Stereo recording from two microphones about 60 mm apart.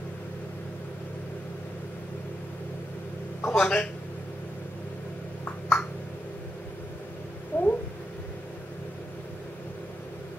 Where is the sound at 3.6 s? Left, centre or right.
Centre.